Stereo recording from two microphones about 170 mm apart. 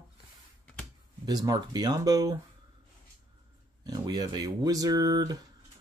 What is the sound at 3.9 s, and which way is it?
Speech, 25° right (ahead or behind).